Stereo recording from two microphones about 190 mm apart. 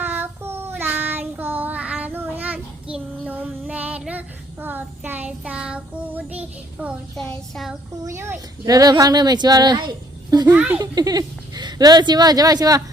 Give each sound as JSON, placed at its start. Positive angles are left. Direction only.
{"t": 0.0, "sound": "child singing", "side_deg": -10}
{"t": 8.0, "sound": "speech", "side_deg": -15}
{"t": 10.5, "sound": "a child's voice", "side_deg": -5}
{"t": 10.8, "sound": "speech", "side_deg": -20}